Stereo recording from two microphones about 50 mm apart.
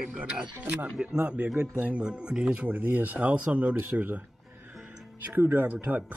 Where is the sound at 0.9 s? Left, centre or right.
Centre.